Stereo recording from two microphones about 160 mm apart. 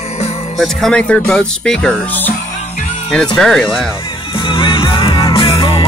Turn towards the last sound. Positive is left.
turn(degrees=35)  # may be behind; listen again after turning